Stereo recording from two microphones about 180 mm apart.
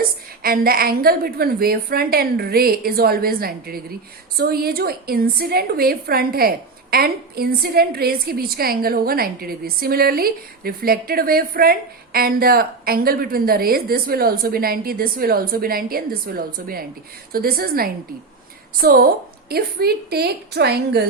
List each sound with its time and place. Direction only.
0.4 s a woman's voice: 55° right (ahead or behind)